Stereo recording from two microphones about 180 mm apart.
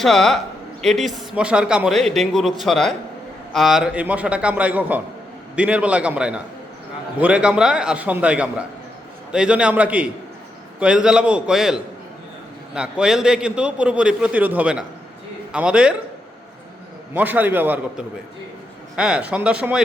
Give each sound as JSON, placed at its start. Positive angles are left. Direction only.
{"t": 0.0, "sound": "a man's voice", "side_deg": 0}
{"t": 17.2, "sound": "a man's voice", "side_deg": -10}